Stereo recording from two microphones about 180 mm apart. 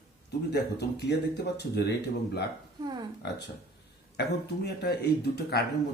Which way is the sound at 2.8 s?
25° right (ahead or behind).